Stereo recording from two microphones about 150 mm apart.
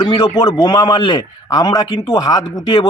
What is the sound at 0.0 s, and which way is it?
Speech, 30° left (ahead or behind).